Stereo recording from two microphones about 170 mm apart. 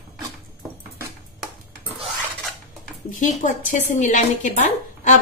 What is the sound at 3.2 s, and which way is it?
Speech, 50° left (ahead or behind).